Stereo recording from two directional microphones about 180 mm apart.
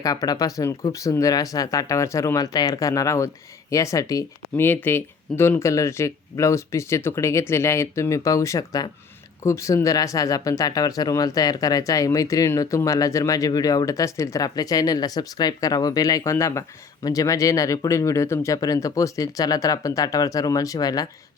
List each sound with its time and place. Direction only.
0.0 s speech: 20° left (ahead or behind)